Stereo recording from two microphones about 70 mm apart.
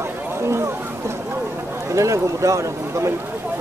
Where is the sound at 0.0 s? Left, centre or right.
Right.